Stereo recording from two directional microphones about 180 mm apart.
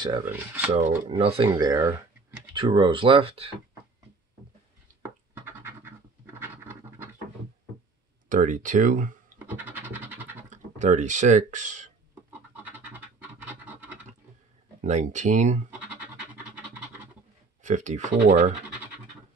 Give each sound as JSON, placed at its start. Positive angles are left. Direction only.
{"t": 0.2, "sound": "rub", "side_deg": -10}
{"t": 0.7, "sound": "speech", "side_deg": -40}
{"t": 5.3, "sound": "scratch", "side_deg": -15}
{"t": 6.4, "sound": "a sound", "side_deg": -10}
{"t": 8.3, "sound": "speech", "side_deg": -45}
{"t": 9.4, "sound": "scratch", "side_deg": -10}
{"t": 10.5, "sound": "speech", "side_deg": -40}
{"t": 12.3, "sound": "a sound", "side_deg": -10}
{"t": 14.8, "sound": "speech", "side_deg": -40}
{"t": 17.6, "sound": "speech", "side_deg": -40}